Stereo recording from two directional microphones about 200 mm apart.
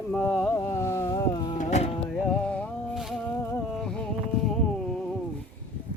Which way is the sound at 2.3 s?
5° left (ahead or behind).